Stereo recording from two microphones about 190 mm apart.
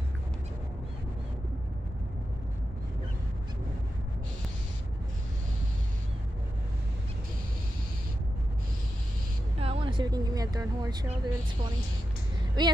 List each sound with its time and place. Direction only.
9.6 s speech: 30° right (ahead or behind)
12.6 s speech: 20° right (ahead or behind)